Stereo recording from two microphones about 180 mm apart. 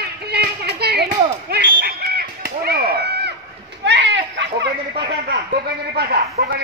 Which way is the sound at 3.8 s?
75° right (ahead or behind).